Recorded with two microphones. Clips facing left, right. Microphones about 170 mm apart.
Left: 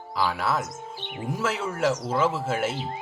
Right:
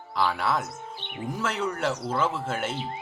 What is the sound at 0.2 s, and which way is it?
Speech, 5° left (ahead or behind).